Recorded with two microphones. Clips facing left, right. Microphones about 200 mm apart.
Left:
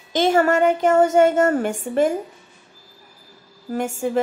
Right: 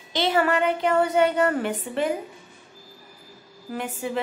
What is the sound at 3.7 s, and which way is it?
Speech, 45° left (ahead or behind).